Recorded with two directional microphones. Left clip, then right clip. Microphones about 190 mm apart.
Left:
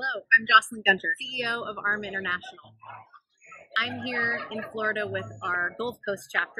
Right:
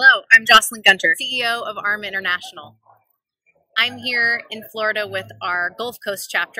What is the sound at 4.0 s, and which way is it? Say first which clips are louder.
Speech: right 9 dB; 15° right (ahead or behind).